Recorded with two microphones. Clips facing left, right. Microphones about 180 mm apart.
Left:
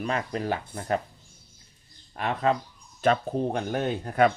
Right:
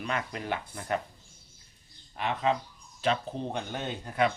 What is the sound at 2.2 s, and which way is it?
Speech, 45° left (ahead or behind).